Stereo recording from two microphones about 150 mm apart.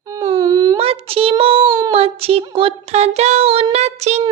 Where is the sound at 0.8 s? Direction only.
40° right (ahead or behind).